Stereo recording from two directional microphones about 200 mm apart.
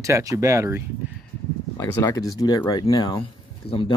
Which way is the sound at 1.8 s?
15° left (ahead or behind).